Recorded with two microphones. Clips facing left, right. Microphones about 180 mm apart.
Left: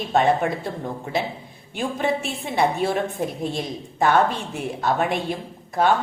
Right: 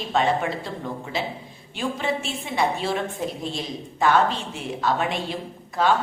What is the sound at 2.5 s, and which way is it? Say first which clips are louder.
A woman's voice: left 3 dB; 55° left (ahead or behind).